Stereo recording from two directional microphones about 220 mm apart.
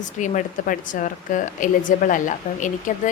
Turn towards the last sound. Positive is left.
turn(degrees=35)  # may be behind; listen again after turning